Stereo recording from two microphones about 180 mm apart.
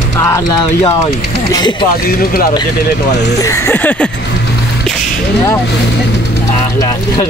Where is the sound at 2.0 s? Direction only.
55° left (ahead or behind).